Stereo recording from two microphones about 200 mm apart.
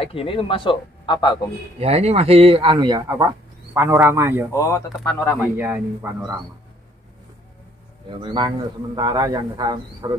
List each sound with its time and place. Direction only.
0.0 s speech: 30° left (ahead or behind)
1.8 s speech: 30° right (ahead or behind); by 4.5 s 10° right (ahead or behind)
4.5 s speech: 15° left (ahead or behind)
5.4 s speech: 10° right (ahead or behind)
8.1 s speech: 25° right (ahead or behind)